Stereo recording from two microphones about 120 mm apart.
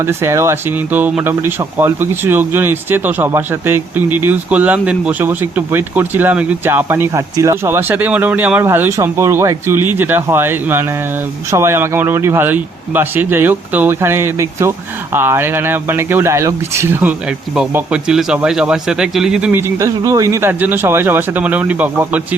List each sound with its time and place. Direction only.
0.0 s speech: 20° right (ahead or behind)
7.1 s speech: 30° right (ahead or behind); by 19.5 s 5° right (ahead or behind)
19.5 s speech: 20° right (ahead or behind)